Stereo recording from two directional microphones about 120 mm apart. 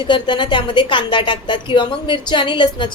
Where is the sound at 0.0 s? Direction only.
40° left (ahead or behind).